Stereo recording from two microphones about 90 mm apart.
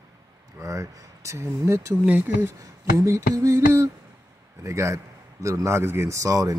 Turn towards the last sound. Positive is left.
turn(degrees=-40)  # may be behind; listen again after turning